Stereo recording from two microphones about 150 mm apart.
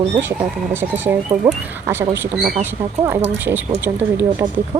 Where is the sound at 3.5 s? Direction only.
15° right (ahead or behind).